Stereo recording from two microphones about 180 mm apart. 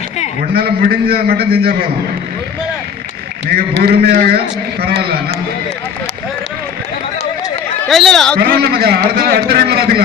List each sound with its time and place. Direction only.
0.5 s a man's voice: 60° right (ahead or behind)
3.8 s a man's voice: 55° right (ahead or behind)
7.9 s a man's voice: centre (ahead or behind)
8.4 s a man's voice: 60° right (ahead or behind)